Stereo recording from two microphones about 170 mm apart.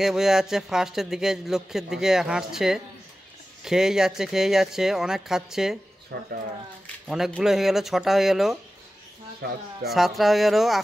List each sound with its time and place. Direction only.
0.0 s speech: centre (ahead or behind)
6.1 s speech: 80° right
7.1 s speech: 5° right (ahead or behind)
9.8 s speech: centre (ahead or behind)